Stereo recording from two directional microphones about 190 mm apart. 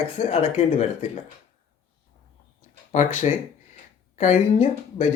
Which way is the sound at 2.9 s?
40° left (ahead or behind).